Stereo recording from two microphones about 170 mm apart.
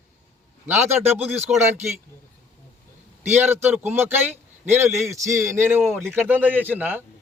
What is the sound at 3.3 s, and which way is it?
A man's voice, 10° right (ahead or behind).